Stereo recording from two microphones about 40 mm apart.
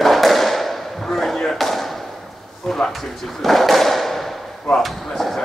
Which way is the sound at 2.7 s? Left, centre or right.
Centre.